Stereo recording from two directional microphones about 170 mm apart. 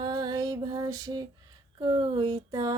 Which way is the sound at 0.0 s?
25° right (ahead or behind).